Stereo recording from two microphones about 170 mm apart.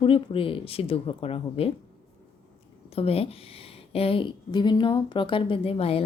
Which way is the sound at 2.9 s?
35° left (ahead or behind).